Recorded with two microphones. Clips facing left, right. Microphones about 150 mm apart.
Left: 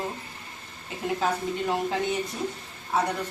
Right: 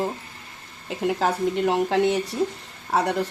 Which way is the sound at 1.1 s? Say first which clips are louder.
Right 2 dB; 80° right.